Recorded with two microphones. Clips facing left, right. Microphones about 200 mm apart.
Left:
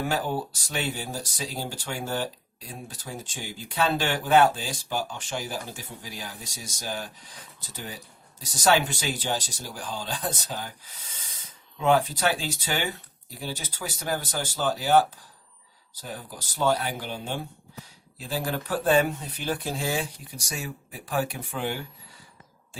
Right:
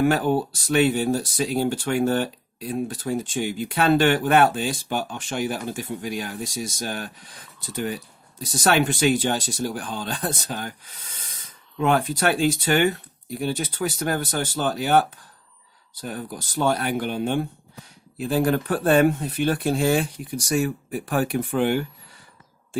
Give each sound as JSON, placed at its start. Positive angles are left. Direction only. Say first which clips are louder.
{"t": 0.0, "sound": "speech", "louder": "right 8 dB", "side_deg": -60}
{"t": 16.0, "sound": "speech", "louder": "right 6 dB", "side_deg": -60}